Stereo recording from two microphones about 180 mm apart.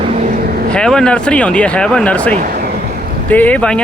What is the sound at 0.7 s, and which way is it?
Speech, 5° left (ahead or behind).